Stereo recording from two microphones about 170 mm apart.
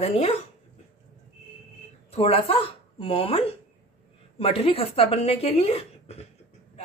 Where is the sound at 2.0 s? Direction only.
35° left (ahead or behind).